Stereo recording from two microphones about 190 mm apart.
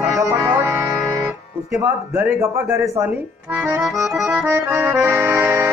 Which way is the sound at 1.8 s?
15° right (ahead or behind).